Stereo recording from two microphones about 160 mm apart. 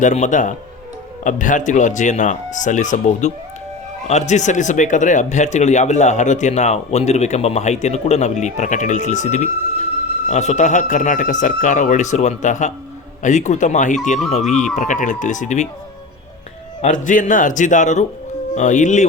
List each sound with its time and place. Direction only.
0.0 s speech: 50° left (ahead or behind)
16.8 s speech: 50° left (ahead or behind)